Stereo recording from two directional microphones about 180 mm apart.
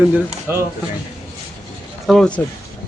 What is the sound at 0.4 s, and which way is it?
Speech, 15° right (ahead or behind).